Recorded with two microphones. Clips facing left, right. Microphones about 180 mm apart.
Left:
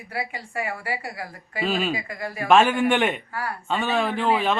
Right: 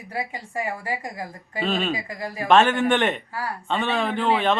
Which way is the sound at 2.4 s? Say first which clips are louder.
Even; 10° left (ahead or behind).